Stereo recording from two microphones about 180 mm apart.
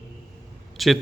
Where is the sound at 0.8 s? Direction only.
Centre (ahead or behind).